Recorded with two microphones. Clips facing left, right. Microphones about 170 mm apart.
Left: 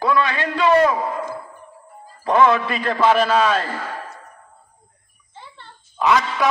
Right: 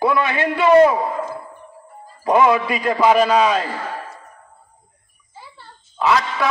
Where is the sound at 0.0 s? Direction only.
20° right (ahead or behind).